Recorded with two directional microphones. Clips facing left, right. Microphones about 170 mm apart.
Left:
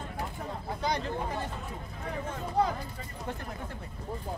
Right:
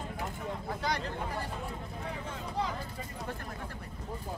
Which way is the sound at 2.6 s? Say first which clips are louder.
Left 7 dB; 50° left (ahead or behind).